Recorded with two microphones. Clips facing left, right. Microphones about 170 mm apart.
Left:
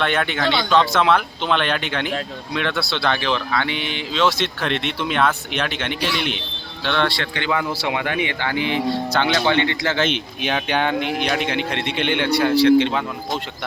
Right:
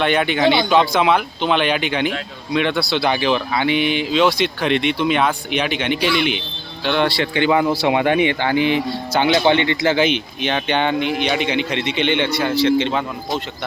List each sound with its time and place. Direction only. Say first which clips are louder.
0.0 s speech: right 4 dB; 5° right (ahead or behind)
0.3 s speech: right 5 dB; 20° right (ahead or behind)
0.7 s speech: right 2 dB; 5° right (ahead or behind)
10.4 s speech: right 2 dB; 5° left (ahead or behind)